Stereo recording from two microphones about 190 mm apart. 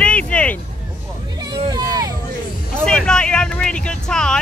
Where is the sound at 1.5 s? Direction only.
20° right (ahead or behind).